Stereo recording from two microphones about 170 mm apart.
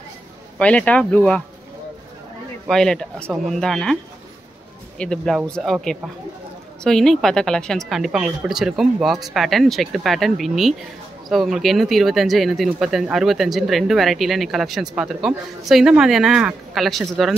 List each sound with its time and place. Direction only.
0.6 s speech: 5° left (ahead or behind)
2.6 s speech: 5° left (ahead or behind)